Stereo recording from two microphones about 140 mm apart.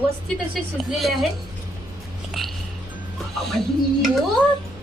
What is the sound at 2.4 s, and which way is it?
Music, centre (ahead or behind).